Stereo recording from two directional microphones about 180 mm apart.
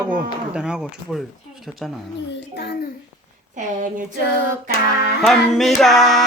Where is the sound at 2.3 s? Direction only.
70° left (ahead or behind).